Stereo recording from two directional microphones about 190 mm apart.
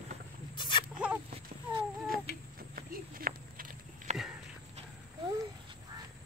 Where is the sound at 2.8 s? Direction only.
50° right (ahead or behind).